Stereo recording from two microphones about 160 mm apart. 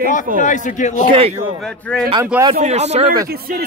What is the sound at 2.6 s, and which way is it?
Speech, 45° right (ahead or behind).